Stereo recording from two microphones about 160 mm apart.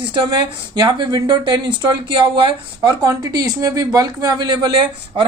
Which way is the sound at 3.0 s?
20° right (ahead or behind).